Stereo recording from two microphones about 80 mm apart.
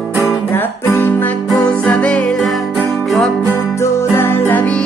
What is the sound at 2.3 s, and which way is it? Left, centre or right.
Music, centre.